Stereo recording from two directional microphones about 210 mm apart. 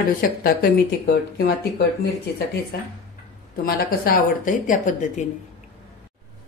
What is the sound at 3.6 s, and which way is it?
Speech, 40° left (ahead or behind).